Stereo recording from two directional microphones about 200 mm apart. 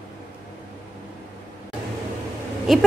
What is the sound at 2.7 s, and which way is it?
Speech, centre (ahead or behind).